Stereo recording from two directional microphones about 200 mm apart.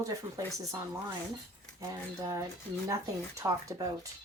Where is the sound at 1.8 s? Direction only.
15° right (ahead or behind).